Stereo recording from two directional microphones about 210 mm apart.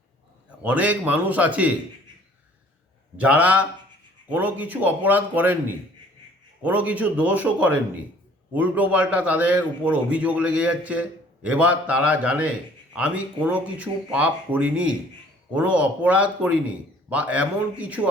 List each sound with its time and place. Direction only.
0.6 s a man's voice: 5° right (ahead or behind)
3.2 s a man's voice: 5° right (ahead or behind)
6.6 s a man's voice: 5° right (ahead or behind)